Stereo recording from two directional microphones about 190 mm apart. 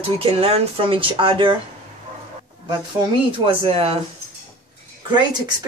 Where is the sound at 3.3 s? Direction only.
30° right (ahead or behind).